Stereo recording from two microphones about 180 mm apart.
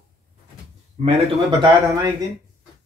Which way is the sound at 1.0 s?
40° right (ahead or behind).